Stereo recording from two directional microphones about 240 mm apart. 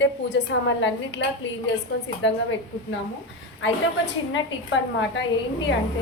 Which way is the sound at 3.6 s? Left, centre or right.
Left.